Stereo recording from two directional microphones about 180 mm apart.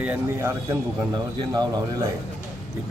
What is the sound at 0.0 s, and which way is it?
Speech, 10° right (ahead or behind).